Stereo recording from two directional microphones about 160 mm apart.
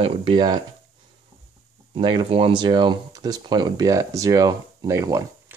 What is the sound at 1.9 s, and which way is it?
Speech, 30° right (ahead or behind).